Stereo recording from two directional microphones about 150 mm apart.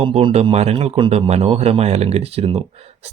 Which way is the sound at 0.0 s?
40° right (ahead or behind).